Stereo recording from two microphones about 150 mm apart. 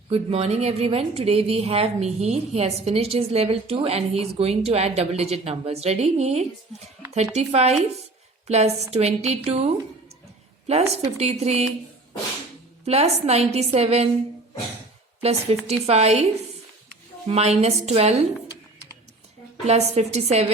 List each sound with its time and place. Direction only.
0.1 s a woman's voice: 45° right (ahead or behind)
12.8 s a woman's voice: 45° right (ahead or behind)
15.2 s a woman's voice: 45° right (ahead or behind)
19.6 s a woman's voice: 45° right (ahead or behind)